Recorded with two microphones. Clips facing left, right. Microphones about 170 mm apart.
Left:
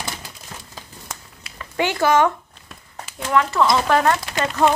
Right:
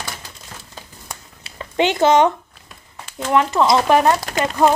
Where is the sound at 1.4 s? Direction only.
25° right (ahead or behind).